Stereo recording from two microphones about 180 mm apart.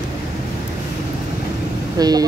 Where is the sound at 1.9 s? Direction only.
20° right (ahead or behind).